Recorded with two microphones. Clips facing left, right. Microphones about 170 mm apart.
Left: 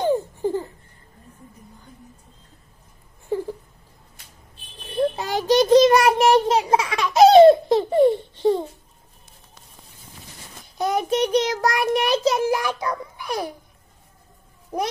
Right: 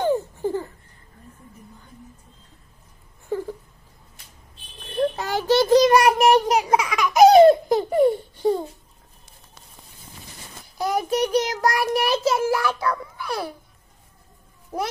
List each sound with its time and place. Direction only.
0.0 s laughter: 15° left (ahead or behind)
3.3 s whimper: 15° left (ahead or behind)
4.7 s child singing: 10° left (ahead or behind)
10.8 s child singing: 20° left (ahead or behind)